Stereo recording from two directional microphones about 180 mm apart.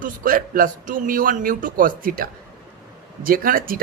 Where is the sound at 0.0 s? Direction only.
50° right (ahead or behind).